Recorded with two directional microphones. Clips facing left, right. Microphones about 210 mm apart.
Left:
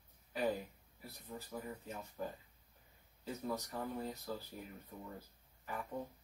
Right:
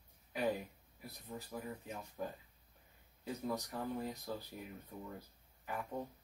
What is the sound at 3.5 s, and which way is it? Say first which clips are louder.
Speech: right 1 dB; 15° right (ahead or behind).